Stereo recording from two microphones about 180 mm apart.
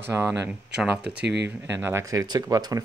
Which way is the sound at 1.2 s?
70° right (ahead or behind).